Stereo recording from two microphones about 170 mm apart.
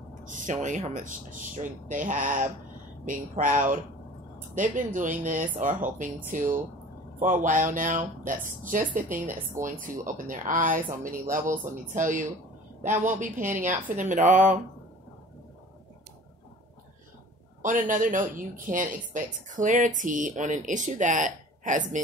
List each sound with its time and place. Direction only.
0.2 s speech: 50° right (ahead or behind)
17.6 s speech: 50° right (ahead or behind)